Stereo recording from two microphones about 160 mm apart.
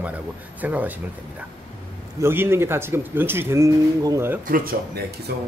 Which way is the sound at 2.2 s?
15° right (ahead or behind).